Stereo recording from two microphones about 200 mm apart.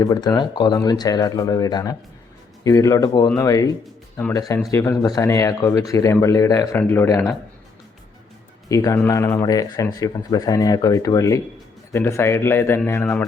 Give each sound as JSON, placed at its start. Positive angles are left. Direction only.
{"t": 0.0, "sound": "speech", "side_deg": 20}
{"t": 8.7, "sound": "speech", "side_deg": 15}